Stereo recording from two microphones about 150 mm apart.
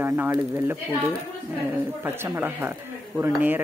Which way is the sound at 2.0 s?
15° right (ahead or behind).